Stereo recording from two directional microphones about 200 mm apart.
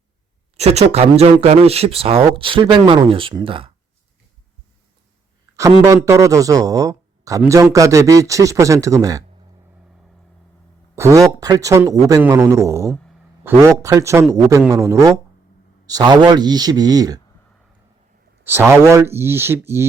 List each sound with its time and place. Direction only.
0.5 s speech: 30° right (ahead or behind)
5.5 s speech: 15° right (ahead or behind)
10.9 s speech: 15° right (ahead or behind)
18.4 s speech: 10° right (ahead or behind)